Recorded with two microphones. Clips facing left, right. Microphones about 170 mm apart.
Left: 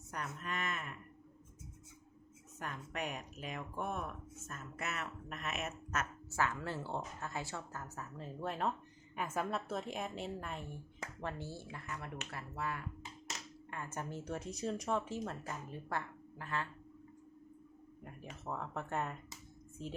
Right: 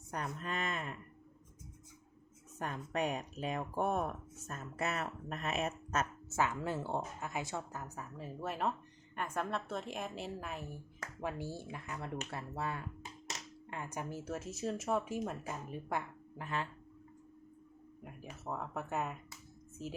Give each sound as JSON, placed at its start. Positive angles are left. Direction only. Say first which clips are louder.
{"t": 0.4, "sound": "speech", "louder": "right 1 dB", "side_deg": -30}
{"t": 2.6, "sound": "speech", "louder": "right 6 dB", "side_deg": -30}
{"t": 6.4, "sound": "a woman's voice", "louder": "right 2 dB", "side_deg": -15}
{"t": 18.0, "sound": "a woman's voice", "louder": "right 1 dB", "side_deg": -5}